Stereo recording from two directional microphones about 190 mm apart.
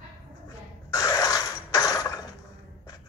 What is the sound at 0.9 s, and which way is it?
Mechanisms, 15° left (ahead or behind).